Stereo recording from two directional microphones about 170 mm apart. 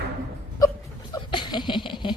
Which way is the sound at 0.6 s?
20° left (ahead or behind).